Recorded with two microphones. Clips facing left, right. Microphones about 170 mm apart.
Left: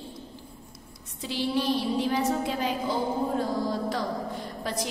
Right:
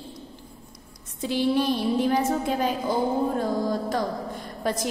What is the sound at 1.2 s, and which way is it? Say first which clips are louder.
Speech: right 4 dB; 50° right (ahead or behind).